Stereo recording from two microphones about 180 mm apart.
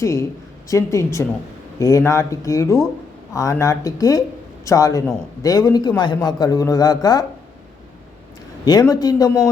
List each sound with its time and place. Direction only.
0.0 s a man's voice: 15° left (ahead or behind)
8.6 s a man's voice: 20° left (ahead or behind)